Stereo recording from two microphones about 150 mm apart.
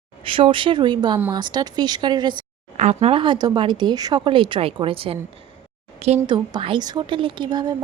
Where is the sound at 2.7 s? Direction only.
45° right (ahead or behind).